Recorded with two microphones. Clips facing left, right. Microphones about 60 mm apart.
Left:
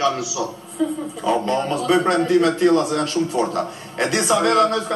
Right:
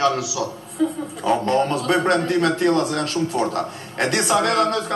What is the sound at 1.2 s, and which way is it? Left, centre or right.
A man's voice, right.